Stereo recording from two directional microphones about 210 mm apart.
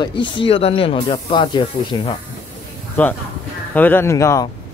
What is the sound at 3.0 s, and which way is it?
Speech, 10° left (ahead or behind).